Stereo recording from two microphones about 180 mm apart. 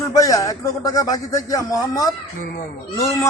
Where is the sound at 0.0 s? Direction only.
20° left (ahead or behind).